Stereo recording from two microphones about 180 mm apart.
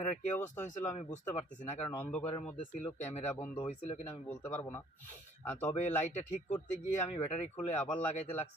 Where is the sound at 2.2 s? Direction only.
35° left (ahead or behind).